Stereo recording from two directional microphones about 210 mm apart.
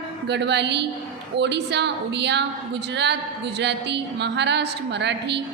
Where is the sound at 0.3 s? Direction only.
55° right (ahead or behind).